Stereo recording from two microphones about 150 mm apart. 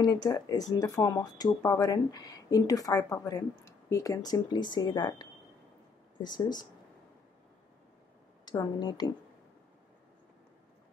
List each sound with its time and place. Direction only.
0.0 s speech: 25° left (ahead or behind)
8.5 s speech: 30° left (ahead or behind)